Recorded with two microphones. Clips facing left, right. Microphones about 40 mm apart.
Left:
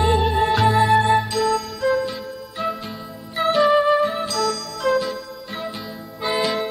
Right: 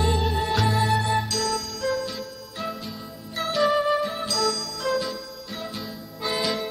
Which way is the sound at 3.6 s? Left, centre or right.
Centre.